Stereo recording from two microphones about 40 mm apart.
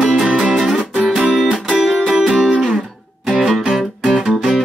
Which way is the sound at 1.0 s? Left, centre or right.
Centre.